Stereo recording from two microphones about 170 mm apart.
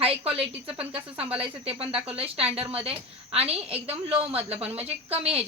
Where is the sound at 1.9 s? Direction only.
5° right (ahead or behind).